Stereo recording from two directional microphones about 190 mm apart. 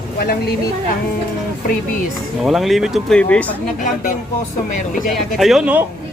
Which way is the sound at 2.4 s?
Centre (ahead or behind).